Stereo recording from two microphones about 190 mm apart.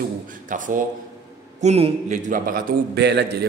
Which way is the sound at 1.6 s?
35° right (ahead or behind).